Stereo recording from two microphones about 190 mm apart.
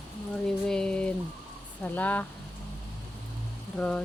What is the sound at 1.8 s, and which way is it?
Speech, 10° left (ahead or behind).